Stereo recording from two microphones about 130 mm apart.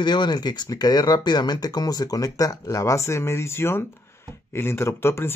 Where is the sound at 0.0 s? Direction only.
35° left (ahead or behind).